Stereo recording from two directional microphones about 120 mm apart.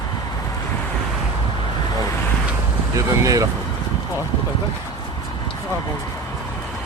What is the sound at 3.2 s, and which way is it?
Speech, 30° right (ahead or behind).